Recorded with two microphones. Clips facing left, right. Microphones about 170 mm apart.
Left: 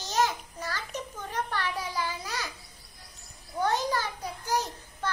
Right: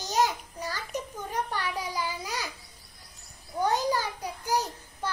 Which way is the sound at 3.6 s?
10° right (ahead or behind).